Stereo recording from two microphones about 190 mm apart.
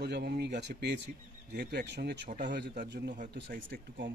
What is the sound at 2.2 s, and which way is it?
Speech, 45° right (ahead or behind).